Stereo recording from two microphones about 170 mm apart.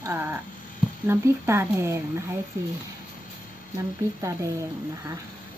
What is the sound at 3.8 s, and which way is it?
Speech, 15° right (ahead or behind).